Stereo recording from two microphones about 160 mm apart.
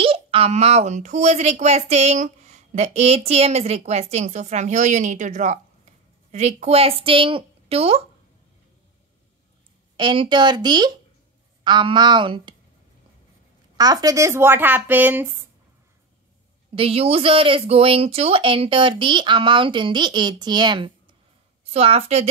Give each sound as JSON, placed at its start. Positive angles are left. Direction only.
{"t": 0.0, "sound": "speech", "side_deg": -35}
{"t": 9.9, "sound": "speech", "side_deg": -30}
{"t": 13.7, "sound": "speech", "side_deg": -25}
{"t": 16.7, "sound": "speech", "side_deg": -35}